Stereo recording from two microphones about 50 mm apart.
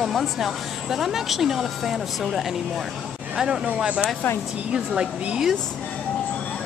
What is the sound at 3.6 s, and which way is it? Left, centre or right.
Speech, centre.